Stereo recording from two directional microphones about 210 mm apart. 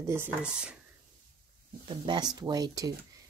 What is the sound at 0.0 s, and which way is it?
Speech, 10° right (ahead or behind).